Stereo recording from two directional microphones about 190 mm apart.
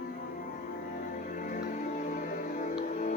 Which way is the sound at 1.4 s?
45° left (ahead or behind).